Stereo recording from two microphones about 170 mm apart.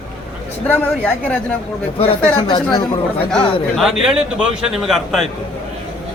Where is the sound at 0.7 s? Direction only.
10° left (ahead or behind).